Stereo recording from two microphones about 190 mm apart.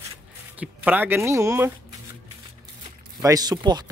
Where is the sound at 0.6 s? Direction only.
10° right (ahead or behind).